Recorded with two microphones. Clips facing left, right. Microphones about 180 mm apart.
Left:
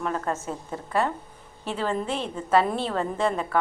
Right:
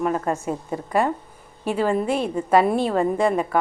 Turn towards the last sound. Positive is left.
turn(degrees=-10)  # may be behind; listen again after turning